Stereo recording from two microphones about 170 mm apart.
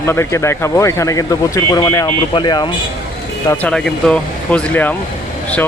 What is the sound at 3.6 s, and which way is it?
Speech, 5° left (ahead or behind).